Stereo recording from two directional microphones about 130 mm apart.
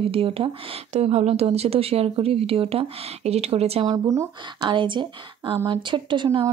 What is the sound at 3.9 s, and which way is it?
Speech, 30° right (ahead or behind).